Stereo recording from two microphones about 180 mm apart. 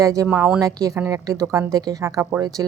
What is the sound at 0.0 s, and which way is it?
Speech, 20° right (ahead or behind).